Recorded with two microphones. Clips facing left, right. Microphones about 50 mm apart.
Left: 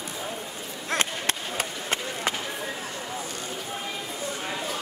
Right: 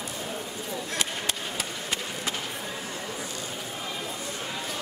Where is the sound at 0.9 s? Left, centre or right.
Left.